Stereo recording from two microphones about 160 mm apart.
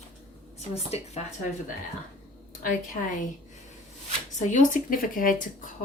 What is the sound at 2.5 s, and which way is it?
Speech, 60° left (ahead or behind).